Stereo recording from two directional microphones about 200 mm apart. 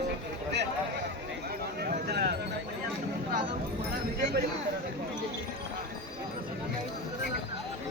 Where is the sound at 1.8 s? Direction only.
50° right (ahead or behind).